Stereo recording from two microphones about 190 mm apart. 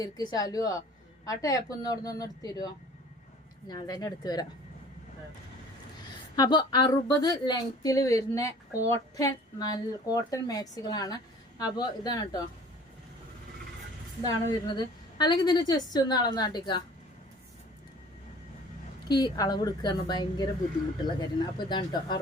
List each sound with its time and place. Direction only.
0.0 s a woman's voice: 20° left (ahead or behind)
3.7 s a woman's voice: 20° left (ahead or behind)
6.3 s a woman's voice: 20° left (ahead or behind)
14.7 s a woman's voice: 20° left (ahead or behind)
19.0 s a woman's voice: 20° left (ahead or behind)